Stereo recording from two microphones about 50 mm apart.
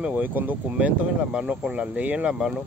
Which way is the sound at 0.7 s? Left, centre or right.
Right.